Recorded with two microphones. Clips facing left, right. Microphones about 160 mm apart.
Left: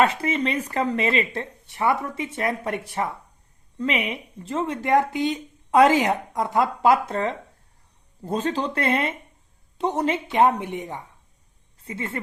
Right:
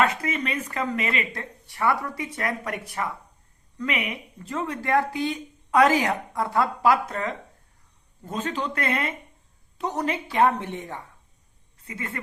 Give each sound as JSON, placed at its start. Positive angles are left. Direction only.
{"t": 0.0, "sound": "speech", "side_deg": 30}
{"t": 11.8, "sound": "speech", "side_deg": 25}